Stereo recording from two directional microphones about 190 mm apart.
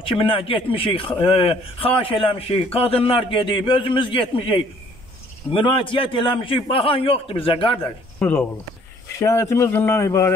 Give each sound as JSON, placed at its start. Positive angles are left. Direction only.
{"t": 0.0, "sound": "a man's voice", "side_deg": 30}
{"t": 8.2, "sound": "speech", "side_deg": 10}